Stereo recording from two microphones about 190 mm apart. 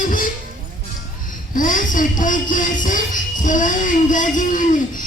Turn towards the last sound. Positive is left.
turn(degrees=40)  # may be behind; listen again after turning